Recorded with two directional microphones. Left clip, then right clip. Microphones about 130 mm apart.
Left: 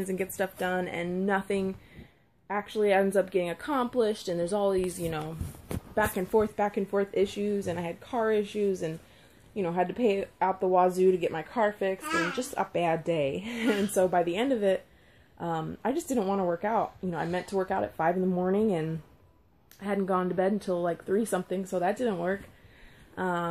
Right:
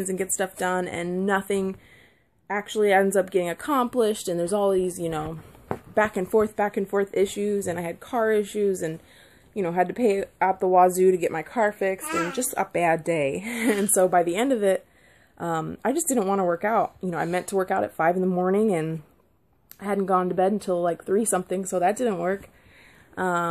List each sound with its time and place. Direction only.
0.0 s speech: 30° right (ahead or behind); by 5.1 s 50° right (ahead or behind)
5.9 s speech: 25° right (ahead or behind)